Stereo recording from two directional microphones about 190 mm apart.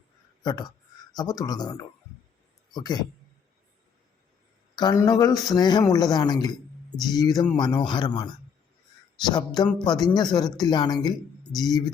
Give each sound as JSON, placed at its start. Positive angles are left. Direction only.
{"t": 0.4, "sound": "speech", "side_deg": 20}
{"t": 4.7, "sound": "speech", "side_deg": 25}
{"t": 9.8, "sound": "speech", "side_deg": 20}